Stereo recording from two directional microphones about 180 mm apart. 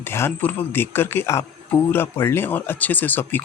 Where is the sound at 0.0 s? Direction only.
15° left (ahead or behind).